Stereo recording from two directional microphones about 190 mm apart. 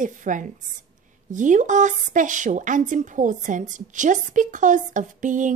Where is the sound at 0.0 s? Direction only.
40° right (ahead or behind).